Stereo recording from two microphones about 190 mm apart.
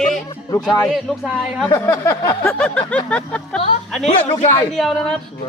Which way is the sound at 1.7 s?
15° left (ahead or behind).